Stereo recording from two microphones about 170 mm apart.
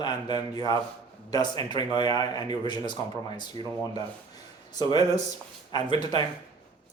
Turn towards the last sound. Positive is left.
turn(degrees=25)  # may be behind; listen again after turning